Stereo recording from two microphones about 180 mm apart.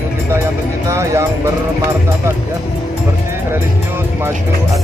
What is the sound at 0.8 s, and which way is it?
Speech, 15° right (ahead or behind).